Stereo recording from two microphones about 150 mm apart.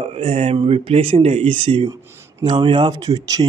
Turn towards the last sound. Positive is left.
turn(degrees=-25)  # may be behind; listen again after turning